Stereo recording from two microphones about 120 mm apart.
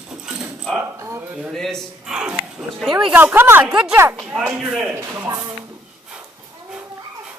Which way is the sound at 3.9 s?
20° right (ahead or behind).